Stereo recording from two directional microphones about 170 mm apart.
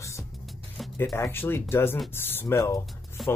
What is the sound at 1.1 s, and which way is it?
Speech, 15° left (ahead or behind).